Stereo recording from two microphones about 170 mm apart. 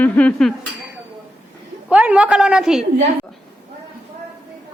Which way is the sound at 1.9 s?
5° right (ahead or behind).